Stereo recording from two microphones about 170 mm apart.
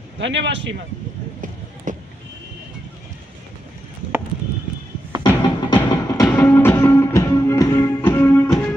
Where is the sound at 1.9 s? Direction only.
50° right (ahead or behind).